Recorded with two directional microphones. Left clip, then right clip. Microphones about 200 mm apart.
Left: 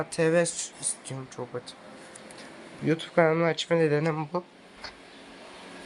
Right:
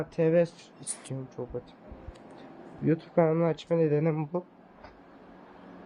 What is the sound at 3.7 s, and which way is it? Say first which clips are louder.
Speech: left 2 dB; 5° left (ahead or behind).